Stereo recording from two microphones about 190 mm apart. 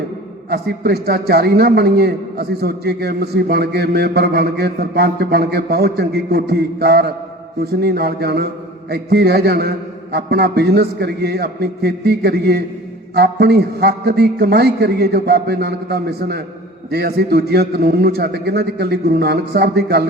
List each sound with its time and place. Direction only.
0.5 s a man's voice: 55° right (ahead or behind)